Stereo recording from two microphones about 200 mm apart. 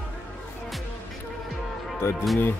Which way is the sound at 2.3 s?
10° left (ahead or behind).